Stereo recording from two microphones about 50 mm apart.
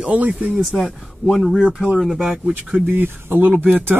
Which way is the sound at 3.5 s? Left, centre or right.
Right.